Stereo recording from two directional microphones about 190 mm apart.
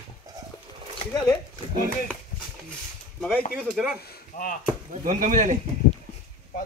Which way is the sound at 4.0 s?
50° left (ahead or behind).